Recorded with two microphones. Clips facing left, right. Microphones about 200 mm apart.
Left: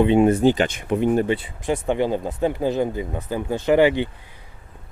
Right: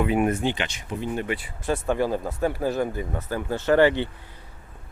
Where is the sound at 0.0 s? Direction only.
25° left (ahead or behind); by 1.1 s 60° left (ahead or behind).